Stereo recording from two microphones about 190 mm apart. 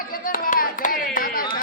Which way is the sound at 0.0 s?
50° left (ahead or behind).